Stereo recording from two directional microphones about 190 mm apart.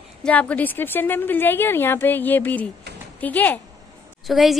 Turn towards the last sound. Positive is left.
turn(degrees=0)  # may be behind; listen again after turning